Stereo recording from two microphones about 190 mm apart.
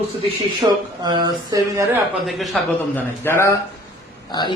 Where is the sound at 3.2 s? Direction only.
15° left (ahead or behind).